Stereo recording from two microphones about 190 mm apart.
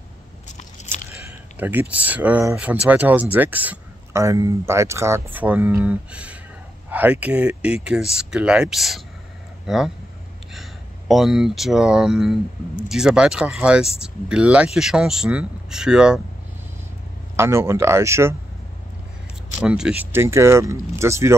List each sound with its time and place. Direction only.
0.8 s biting: 35° left (ahead or behind)
1.6 s speech: 10° right (ahead or behind)
10.5 s speech: centre (ahead or behind)
17.4 s speech: 15° right (ahead or behind)
19.6 s speech: 5° right (ahead or behind)